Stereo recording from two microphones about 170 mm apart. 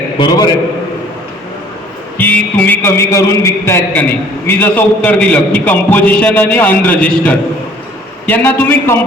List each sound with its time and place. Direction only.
0.2 s a man's voice: 25° left (ahead or behind)
2.1 s a man's voice: 10° left (ahead or behind)